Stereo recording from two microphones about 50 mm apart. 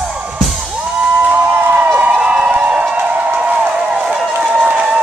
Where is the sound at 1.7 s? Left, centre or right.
Right.